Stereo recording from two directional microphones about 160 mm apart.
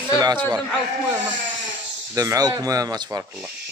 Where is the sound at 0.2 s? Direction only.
25° right (ahead or behind).